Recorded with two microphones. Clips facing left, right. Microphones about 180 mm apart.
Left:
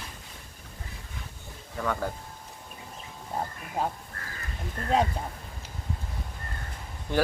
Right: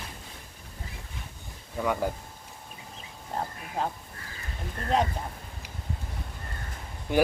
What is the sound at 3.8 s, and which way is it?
Speech, 10° left (ahead or behind).